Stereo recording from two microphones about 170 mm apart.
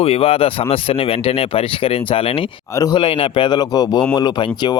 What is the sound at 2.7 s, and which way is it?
Speech, 20° left (ahead or behind).